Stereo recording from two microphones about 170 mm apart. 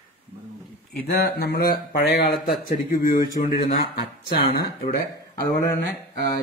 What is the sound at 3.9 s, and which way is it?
Speech, 65° left (ahead or behind).